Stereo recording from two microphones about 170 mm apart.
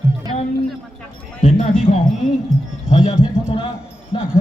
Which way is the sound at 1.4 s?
35° left (ahead or behind).